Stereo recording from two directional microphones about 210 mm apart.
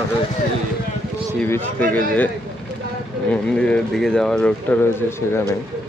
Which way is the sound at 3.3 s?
5° left (ahead or behind).